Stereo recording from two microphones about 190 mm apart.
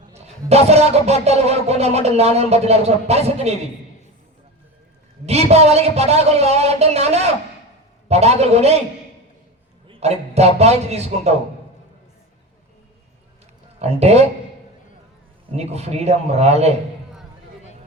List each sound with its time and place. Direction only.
0.1 s speech: 35° right (ahead or behind)
5.2 s speech: 35° right (ahead or behind)
9.8 s speech: 30° right (ahead or behind)
13.7 s speech: 35° right (ahead or behind)
15.5 s speech: 35° right (ahead or behind)